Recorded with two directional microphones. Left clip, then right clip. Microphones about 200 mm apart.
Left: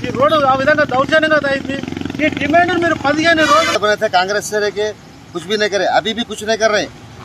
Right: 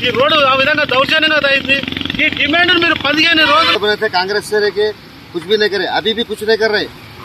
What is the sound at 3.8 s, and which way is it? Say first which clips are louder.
Speech: left 1 dB; 30° left (ahead or behind).